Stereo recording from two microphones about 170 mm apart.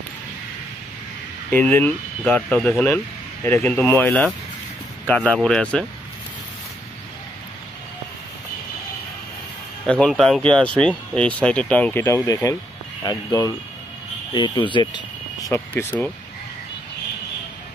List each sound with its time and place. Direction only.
1.5 s speech: 10° left (ahead or behind)
9.8 s speech: 5° left (ahead or behind); by 15.6 s 20° left (ahead or behind)
15.9 s speech: 10° left (ahead or behind)